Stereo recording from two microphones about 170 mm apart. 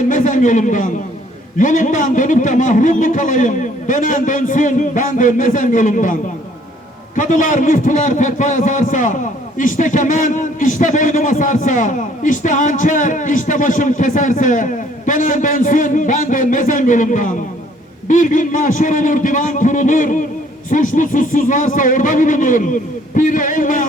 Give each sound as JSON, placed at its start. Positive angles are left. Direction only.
{"t": 0.1, "sound": "a man's voice", "side_deg": 50}
{"t": 7.2, "sound": "a man's voice", "side_deg": 50}